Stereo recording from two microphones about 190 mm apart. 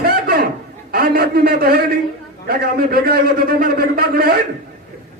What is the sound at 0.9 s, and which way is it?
A man's voice, 50° right (ahead or behind).